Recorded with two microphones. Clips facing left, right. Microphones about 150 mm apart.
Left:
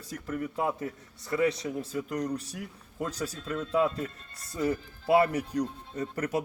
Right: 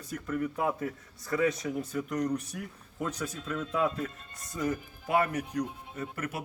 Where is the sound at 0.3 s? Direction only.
25° left (ahead or behind).